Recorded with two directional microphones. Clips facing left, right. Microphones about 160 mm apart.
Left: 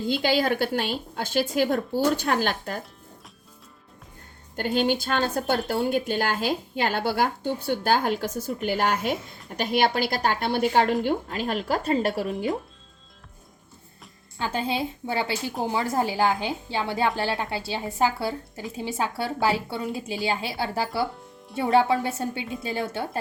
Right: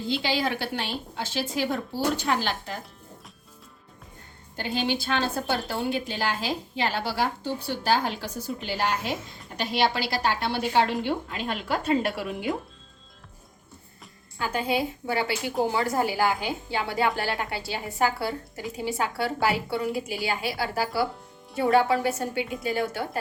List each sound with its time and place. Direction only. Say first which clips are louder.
0.1 s a woman's voice: left 4 dB; 50° left (ahead or behind)
4.5 s a woman's voice: left 4 dB; 50° left (ahead or behind)
14.3 s speech: right 1 dB; 25° left (ahead or behind)